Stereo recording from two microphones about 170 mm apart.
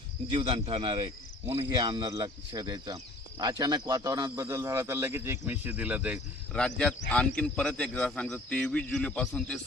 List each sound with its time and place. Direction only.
0.3 s speech: 35° right (ahead or behind); by 6.2 s 10° right (ahead or behind)
6.5 s a man's voice: 5° left (ahead or behind)